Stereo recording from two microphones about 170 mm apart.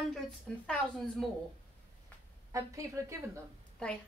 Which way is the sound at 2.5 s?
20° right (ahead or behind).